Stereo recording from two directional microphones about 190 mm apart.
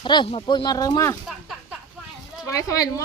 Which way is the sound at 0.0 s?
25° left (ahead or behind).